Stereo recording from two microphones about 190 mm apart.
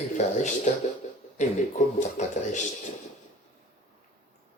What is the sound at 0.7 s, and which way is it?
Speech, 35° left (ahead or behind).